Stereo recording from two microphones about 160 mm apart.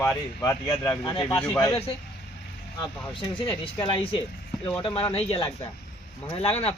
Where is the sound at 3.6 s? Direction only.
35° left (ahead or behind).